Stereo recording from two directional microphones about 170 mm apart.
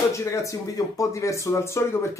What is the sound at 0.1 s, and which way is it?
Speech, 15° left (ahead or behind).